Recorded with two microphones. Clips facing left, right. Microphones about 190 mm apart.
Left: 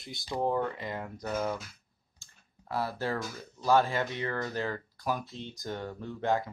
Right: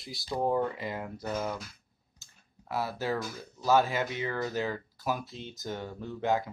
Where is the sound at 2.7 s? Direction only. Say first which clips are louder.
Right 1 dB; 5° right (ahead or behind).